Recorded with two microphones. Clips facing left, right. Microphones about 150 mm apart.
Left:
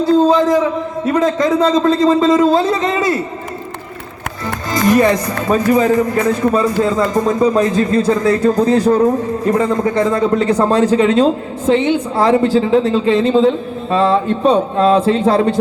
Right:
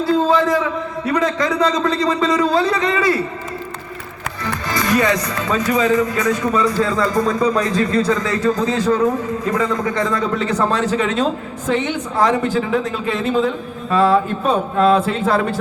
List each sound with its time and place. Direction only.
0.3 s a man's voice: 20° left (ahead or behind)
4.9 s a man's voice: 25° left (ahead or behind)